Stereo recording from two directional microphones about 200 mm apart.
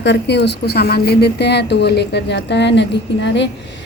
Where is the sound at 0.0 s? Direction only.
60° left (ahead or behind).